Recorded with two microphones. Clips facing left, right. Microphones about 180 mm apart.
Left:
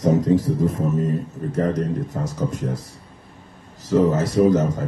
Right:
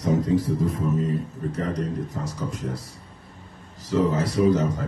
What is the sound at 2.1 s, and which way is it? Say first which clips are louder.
Speech: left 4 dB; 60° left (ahead or behind).